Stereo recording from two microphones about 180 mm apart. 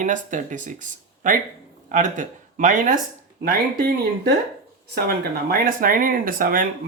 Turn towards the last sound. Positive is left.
turn(degrees=-50)  # may be behind; listen again after turning